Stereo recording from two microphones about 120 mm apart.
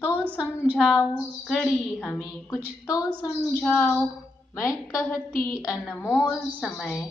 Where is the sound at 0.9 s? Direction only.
10° left (ahead or behind).